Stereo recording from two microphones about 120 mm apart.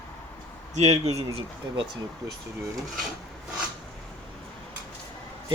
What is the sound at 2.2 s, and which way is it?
Speech, 30° right (ahead or behind).